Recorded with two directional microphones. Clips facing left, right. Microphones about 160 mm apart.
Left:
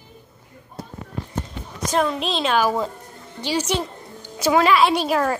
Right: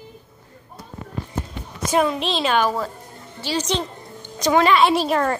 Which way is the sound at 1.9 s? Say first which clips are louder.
Right 2 dB; 5° right (ahead or behind).